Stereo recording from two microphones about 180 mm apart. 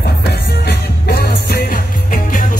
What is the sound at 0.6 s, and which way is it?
Music, 60° left (ahead or behind).